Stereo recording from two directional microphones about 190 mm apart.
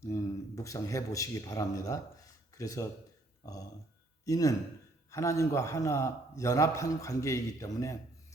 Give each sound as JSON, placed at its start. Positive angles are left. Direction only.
{"t": 0.0, "sound": "a man's voice", "side_deg": 15}